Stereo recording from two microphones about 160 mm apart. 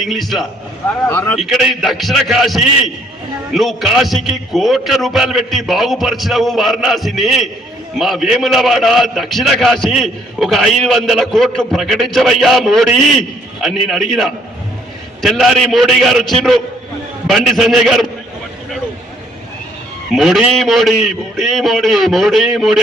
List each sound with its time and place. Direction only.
0.0 s a man's voice: centre (ahead or behind)
1.0 s a man's voice: 15° left (ahead or behind)
1.4 s a man's voice: centre (ahead or behind)
20.1 s a man's voice: 5° right (ahead or behind)